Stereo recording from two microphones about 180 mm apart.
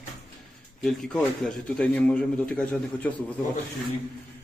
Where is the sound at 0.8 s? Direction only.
5° left (ahead or behind).